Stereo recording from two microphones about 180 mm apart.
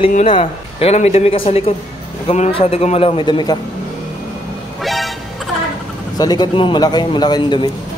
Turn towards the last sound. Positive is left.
turn(degrees=25)  # may be behind; listen again after turning